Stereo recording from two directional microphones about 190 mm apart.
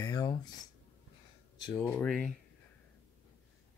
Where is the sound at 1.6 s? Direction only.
15° left (ahead or behind).